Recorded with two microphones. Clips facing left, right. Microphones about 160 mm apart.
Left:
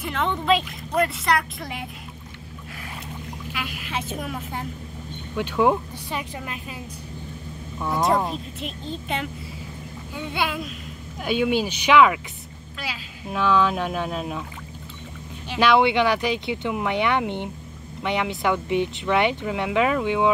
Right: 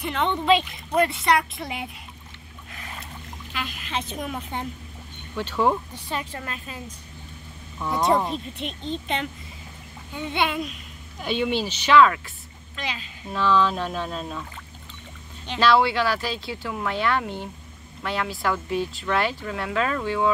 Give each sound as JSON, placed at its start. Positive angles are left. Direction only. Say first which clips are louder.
{"t": 0.0, "sound": "speech", "louder": "right 1 dB", "side_deg": 0}
{"t": 3.5, "sound": "speech", "louder": "right 1 dB", "side_deg": 10}
{"t": 7.8, "sound": "speech", "louder": "even", "side_deg": 0}
{"t": 15.4, "sound": "speech", "louder": "left 1 dB", "side_deg": 10}